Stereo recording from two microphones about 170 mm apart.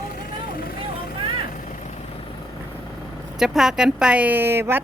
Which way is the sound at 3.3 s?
Centre (ahead or behind).